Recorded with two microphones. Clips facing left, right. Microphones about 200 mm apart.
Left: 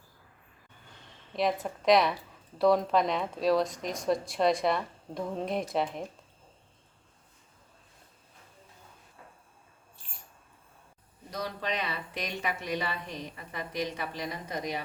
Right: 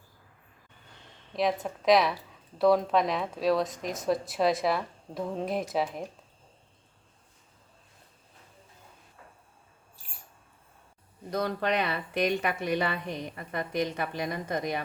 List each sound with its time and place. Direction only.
1.3 s speech: centre (ahead or behind)
11.3 s speech: 55° right (ahead or behind)